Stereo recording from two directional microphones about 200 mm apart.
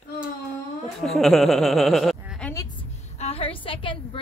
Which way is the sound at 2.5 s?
20° left (ahead or behind).